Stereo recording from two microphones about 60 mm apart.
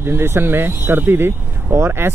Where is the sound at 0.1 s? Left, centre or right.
Right.